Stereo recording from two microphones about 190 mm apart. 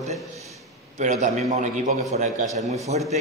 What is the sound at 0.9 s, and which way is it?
Speech, 40° right (ahead or behind).